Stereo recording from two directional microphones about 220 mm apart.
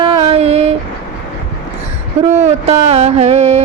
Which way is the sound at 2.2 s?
30° right (ahead or behind).